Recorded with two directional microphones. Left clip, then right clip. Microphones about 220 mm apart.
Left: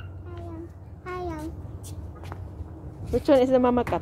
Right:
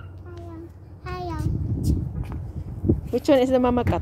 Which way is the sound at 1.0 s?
25° right (ahead or behind).